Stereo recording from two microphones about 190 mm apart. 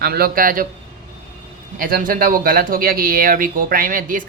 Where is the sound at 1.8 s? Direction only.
45° right (ahead or behind).